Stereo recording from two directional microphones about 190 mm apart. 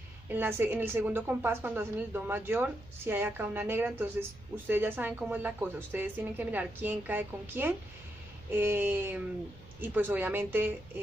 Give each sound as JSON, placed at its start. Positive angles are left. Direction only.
{"t": 0.3, "sound": "a woman's voice", "side_deg": -10}